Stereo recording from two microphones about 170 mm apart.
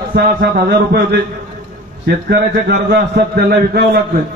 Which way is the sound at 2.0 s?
85° right.